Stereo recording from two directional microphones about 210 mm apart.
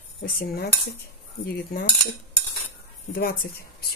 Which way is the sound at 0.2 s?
45° left (ahead or behind).